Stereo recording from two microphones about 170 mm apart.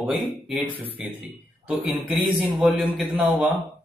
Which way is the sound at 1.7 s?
10° right (ahead or behind).